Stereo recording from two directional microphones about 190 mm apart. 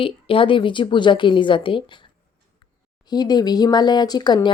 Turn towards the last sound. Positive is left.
turn(degrees=20)  # may be behind; listen again after turning